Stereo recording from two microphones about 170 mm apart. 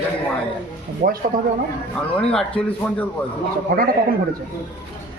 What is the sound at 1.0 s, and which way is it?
Speech, 55° right (ahead or behind).